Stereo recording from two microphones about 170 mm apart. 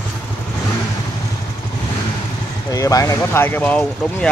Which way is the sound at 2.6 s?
20° left (ahead or behind).